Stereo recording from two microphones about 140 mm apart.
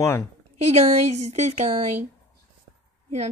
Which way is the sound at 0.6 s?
50° right (ahead or behind).